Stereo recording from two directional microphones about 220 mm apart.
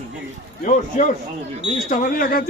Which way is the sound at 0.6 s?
35° left (ahead or behind).